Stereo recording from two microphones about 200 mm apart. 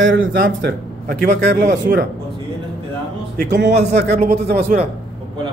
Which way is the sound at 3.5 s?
60° right (ahead or behind).